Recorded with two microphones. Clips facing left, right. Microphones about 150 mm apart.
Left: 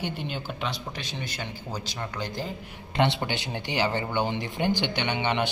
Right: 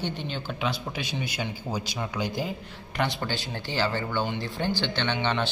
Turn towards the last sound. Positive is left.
turn(degrees=15)  # may be behind; listen again after turning